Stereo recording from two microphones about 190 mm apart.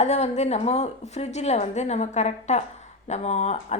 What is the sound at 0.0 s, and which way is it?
A woman's voice, 35° left (ahead or behind).